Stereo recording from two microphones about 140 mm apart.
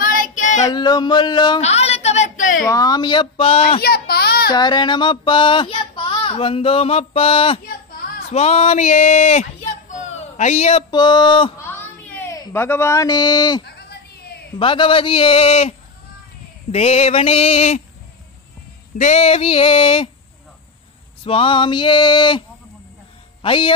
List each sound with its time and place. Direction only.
0.0 s child singing: 75° left (ahead or behind)
0.7 s speech: 30° left (ahead or behind)
1.6 s a sound: 50° left (ahead or behind); by 2.6 s 65° left (ahead or behind)
2.7 s speech: 25° left (ahead or behind)
3.8 s baby cry: 90° left
4.6 s speech: 30° left (ahead or behind)
8.3 s speech: 50° left (ahead or behind)
10.9 s speech: 30° left (ahead or behind)
11.5 s a sound: 15° left (ahead or behind)
12.5 s speech: 15° left (ahead or behind); by 15.7 s 45° left (ahead or behind)
16.7 s a sound: 50° left (ahead or behind)
18.9 s speech: 50° left (ahead or behind)
21.2 s speech: 40° left (ahead or behind)
23.4 s speech: 40° left (ahead or behind)